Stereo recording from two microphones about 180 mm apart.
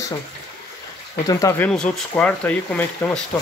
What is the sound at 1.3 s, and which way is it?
Speech, 15° left (ahead or behind).